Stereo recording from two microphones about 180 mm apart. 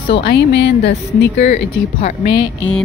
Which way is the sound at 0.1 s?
70° left (ahead or behind).